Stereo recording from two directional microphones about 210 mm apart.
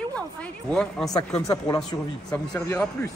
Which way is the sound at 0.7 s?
5° left (ahead or behind).